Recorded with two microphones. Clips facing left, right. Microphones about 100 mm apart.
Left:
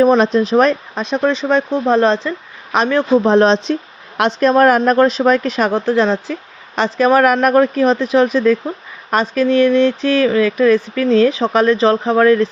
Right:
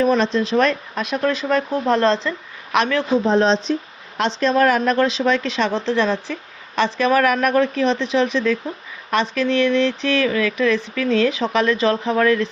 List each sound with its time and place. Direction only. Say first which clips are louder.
0.0 s speech: left 6 dB; 40° left (ahead or behind)
3.2 s speech: left 5 dB; 65° left (ahead or behind)
4.2 s speech: left 5 dB; 50° left (ahead or behind); by 12.5 s 35° left (ahead or behind)